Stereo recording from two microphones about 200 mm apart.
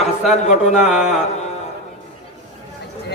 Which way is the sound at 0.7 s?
5° right (ahead or behind).